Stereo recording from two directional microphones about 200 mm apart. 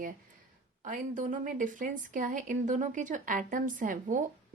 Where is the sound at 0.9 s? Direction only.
40° right (ahead or behind).